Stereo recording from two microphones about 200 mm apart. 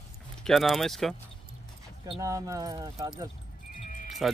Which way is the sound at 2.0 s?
15° right (ahead or behind).